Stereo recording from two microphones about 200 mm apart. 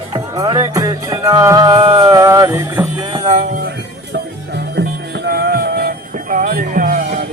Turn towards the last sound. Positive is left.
turn(degrees=-45)  # may be behind; listen again after turning